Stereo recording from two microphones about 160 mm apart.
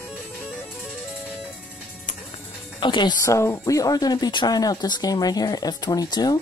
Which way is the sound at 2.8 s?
30° left (ahead or behind).